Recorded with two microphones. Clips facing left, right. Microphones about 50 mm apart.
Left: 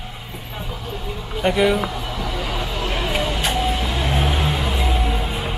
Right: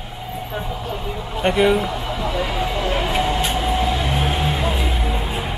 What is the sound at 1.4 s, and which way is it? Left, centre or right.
Speech, centre.